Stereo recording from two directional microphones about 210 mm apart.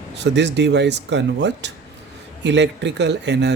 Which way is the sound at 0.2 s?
55° right (ahead or behind).